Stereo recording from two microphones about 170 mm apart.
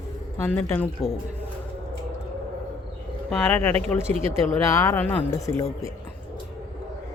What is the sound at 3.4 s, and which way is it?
Speech, 10° left (ahead or behind).